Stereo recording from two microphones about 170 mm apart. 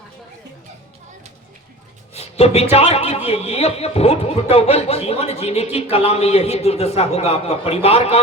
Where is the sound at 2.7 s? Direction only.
40° left (ahead or behind).